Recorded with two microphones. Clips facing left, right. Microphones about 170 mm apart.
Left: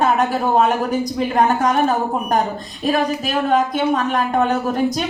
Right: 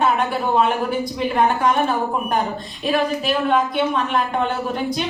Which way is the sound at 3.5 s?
40° left (ahead or behind).